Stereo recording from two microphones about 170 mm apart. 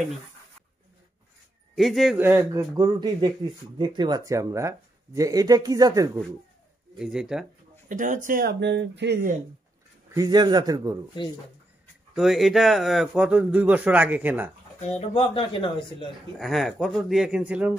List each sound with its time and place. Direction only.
1.8 s speech: centre (ahead or behind)
2.1 s speech: 15° right (ahead or behind)
2.8 s speech: 25° right (ahead or behind)
7.0 s speech: 5° right (ahead or behind)
7.9 s speech: 50° right (ahead or behind); by 9.2 s 90° right
10.1 s speech: 25° right (ahead or behind)
12.2 s speech: centre (ahead or behind)
14.8 s speech: 40° left (ahead or behind)
16.3 s speech: centre (ahead or behind)